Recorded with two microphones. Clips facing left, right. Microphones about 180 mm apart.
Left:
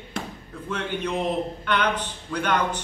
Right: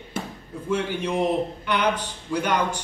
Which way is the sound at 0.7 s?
10° right (ahead or behind).